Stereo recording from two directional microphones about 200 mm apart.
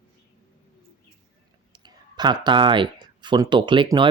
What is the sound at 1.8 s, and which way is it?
Speech, 20° right (ahead or behind).